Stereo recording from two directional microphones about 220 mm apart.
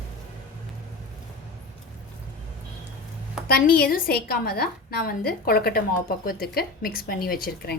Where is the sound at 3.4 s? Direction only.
45° left (ahead or behind).